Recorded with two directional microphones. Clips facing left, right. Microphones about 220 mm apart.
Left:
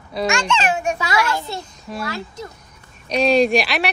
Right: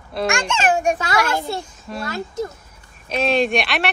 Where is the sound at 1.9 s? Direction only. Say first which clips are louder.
Left 1 dB; centre (ahead or behind).